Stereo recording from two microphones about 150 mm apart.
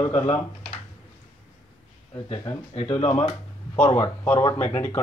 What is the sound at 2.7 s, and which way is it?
Speech, 45° left (ahead or behind).